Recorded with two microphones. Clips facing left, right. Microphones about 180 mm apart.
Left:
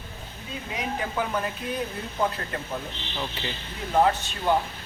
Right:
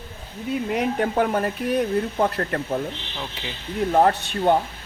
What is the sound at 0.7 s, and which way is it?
Speech, 60° right (ahead or behind).